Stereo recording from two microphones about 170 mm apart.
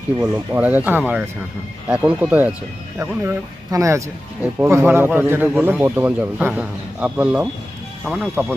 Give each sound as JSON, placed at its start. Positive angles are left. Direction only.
{"t": 0.3, "sound": "a man's voice", "side_deg": -10}